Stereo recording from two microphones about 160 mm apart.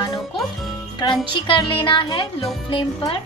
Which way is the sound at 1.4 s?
30° left (ahead or behind).